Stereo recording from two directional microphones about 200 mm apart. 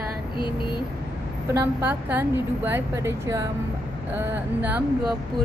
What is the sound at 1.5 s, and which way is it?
A woman's voice, 10° right (ahead or behind).